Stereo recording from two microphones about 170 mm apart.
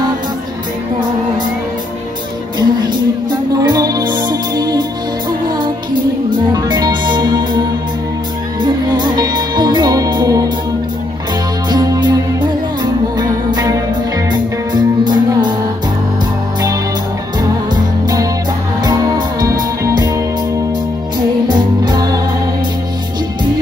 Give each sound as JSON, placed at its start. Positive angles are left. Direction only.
{"t": 2.6, "sound": "music", "side_deg": -25}
{"t": 6.5, "sound": "music", "side_deg": -25}
{"t": 8.6, "sound": "music", "side_deg": -25}
{"t": 11.7, "sound": "music", "side_deg": -25}
{"t": 17.4, "sound": "music", "side_deg": -20}
{"t": 21.5, "sound": "music", "side_deg": -25}